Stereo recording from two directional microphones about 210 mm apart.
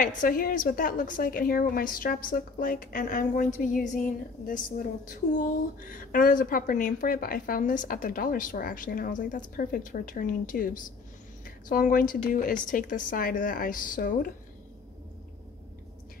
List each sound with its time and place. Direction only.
0.0 s a woman's voice: 40° left (ahead or behind)